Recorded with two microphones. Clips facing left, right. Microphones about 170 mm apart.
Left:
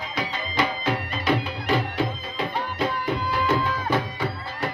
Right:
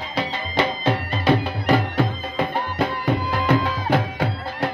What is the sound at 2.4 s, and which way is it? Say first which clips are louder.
Music: right 4 dB; 55° right (ahead or behind).